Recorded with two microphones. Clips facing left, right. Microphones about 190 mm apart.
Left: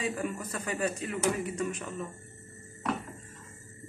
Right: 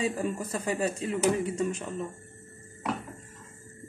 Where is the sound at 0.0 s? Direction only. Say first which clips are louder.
Right 3 dB; 30° right (ahead or behind).